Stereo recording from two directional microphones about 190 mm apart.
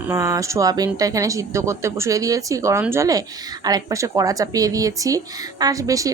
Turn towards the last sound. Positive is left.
turn(degrees=-15)  # may be behind; listen again after turning